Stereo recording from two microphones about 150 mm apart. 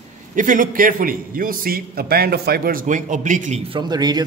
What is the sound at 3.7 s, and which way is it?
Speech, 30° right (ahead or behind).